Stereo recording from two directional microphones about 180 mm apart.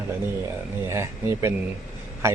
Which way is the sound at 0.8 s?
15° right (ahead or behind).